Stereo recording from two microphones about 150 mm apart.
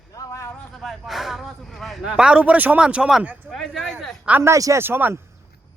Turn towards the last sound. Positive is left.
turn(degrees=-15)  # may be behind; listen again after turning